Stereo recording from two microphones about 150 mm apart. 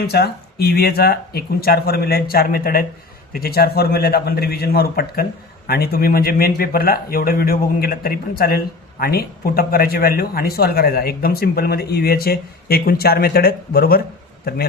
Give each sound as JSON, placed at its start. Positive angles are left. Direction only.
{"t": 0.1, "sound": "speech", "side_deg": 90}